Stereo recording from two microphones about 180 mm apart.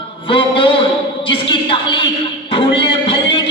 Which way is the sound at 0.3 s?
30° left (ahead or behind).